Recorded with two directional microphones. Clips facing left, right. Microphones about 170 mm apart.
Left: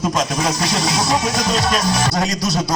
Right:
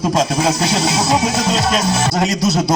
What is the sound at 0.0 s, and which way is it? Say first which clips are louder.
Speech: right 4 dB; 30° right (ahead or behind).